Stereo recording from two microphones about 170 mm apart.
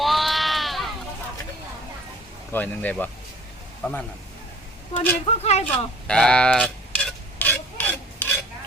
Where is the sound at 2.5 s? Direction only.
10° left (ahead or behind).